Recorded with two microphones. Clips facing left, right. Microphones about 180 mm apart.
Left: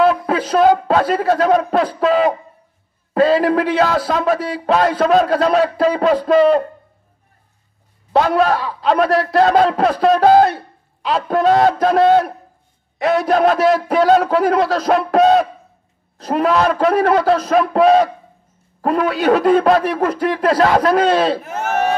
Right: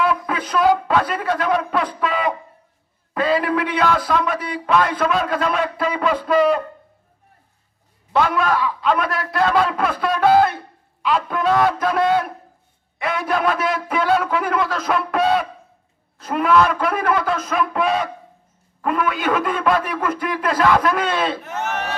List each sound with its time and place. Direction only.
0.3 s a man's voice: 40° left (ahead or behind)
8.1 s a man's voice: 40° left (ahead or behind)
11.5 s speech: 30° left (ahead or behind)
13.0 s a man's voice: 40° left (ahead or behind)